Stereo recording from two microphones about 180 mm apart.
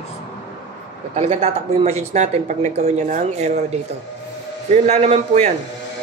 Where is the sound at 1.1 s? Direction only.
35° right (ahead or behind).